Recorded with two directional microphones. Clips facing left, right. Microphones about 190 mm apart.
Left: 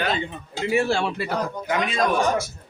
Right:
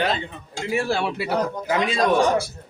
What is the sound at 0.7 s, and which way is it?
Speech, centre (ahead or behind).